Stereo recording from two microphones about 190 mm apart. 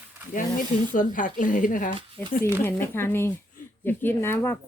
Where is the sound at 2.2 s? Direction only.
10° left (ahead or behind).